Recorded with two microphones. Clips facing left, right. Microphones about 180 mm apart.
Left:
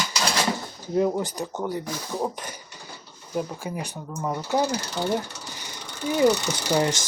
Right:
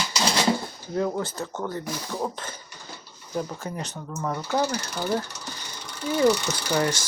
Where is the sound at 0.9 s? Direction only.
20° left (ahead or behind).